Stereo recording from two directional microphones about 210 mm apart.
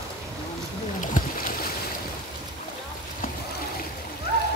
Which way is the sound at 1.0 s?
40° left (ahead or behind).